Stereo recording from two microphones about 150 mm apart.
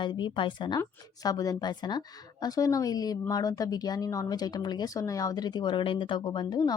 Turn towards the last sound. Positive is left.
turn(degrees=25)  # may be behind; listen again after turning